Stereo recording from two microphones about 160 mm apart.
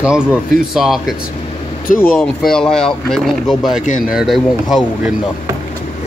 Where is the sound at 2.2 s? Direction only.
5° left (ahead or behind).